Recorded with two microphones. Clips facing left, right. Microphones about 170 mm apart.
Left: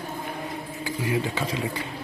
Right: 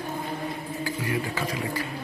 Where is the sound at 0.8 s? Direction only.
25° left (ahead or behind).